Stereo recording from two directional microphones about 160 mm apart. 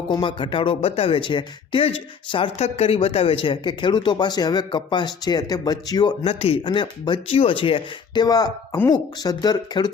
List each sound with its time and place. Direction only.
0.1 s speech: 30° left (ahead or behind)